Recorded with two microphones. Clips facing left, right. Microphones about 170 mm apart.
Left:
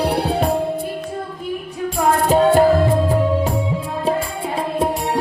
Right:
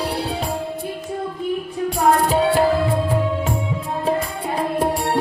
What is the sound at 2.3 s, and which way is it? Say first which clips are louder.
Music: left 4 dB; 45° left (ahead or behind).